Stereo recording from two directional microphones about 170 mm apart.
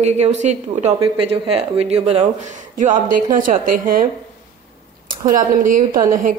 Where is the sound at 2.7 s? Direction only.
50° right (ahead or behind).